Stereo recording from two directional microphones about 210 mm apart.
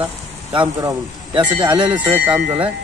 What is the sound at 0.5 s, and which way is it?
Speech, 25° right (ahead or behind).